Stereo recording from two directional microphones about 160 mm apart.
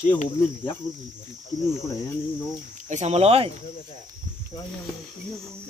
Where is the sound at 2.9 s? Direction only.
45° right (ahead or behind).